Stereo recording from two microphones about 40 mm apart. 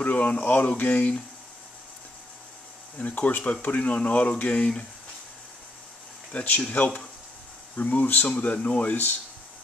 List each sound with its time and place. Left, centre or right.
0.0 s speech: left
3.0 s speech: left
6.3 s speech: left